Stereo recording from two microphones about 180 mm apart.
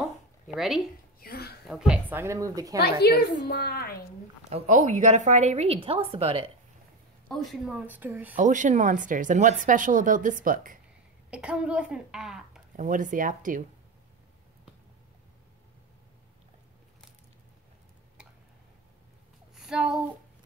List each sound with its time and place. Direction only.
0.0 s a sound: centre (ahead or behind)
1.2 s a sound: 60° left (ahead or behind)
1.7 s speech: 5° right (ahead or behind)
2.8 s a woman's voice: 60° left (ahead or behind)
4.5 s speech: 40° right (ahead or behind)
7.2 s speech: centre (ahead or behind)
8.4 s speech: 45° right (ahead or behind)
11.2 s a woman's voice: 5° right (ahead or behind)
12.7 s speech: 45° right (ahead or behind)
19.5 s a sound: centre (ahead or behind)